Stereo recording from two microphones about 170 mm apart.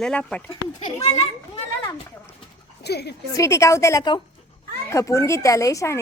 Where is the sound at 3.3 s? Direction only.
15° left (ahead or behind).